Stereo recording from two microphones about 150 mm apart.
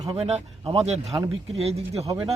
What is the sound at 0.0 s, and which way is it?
Speech, 30° right (ahead or behind).